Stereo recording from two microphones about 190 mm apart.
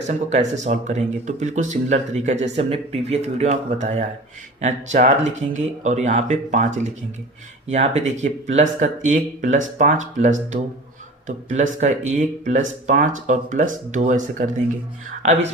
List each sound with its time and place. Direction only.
0.3 s speech: 40° right (ahead or behind)